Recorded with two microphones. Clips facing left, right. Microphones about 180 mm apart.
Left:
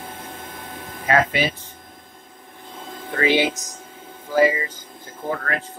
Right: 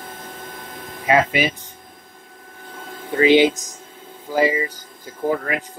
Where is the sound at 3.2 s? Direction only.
20° right (ahead or behind).